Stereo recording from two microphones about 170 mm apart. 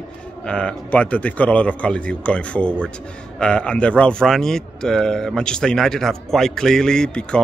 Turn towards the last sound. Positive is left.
turn(degrees=5)  # may be behind; listen again after turning